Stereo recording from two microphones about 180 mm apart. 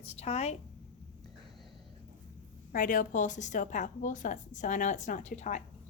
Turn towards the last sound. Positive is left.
turn(degrees=45)  # may be behind; listen again after turning